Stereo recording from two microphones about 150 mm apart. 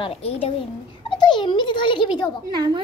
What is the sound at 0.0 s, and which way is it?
Speech, 40° left (ahead or behind).